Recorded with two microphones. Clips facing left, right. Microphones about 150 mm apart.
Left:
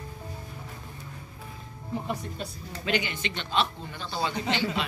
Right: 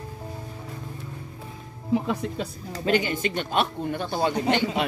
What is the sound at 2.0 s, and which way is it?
Speech, 90° right.